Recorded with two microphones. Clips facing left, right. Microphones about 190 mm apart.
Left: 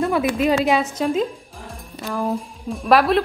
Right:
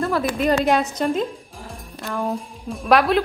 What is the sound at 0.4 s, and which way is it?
A woman's voice, centre (ahead or behind).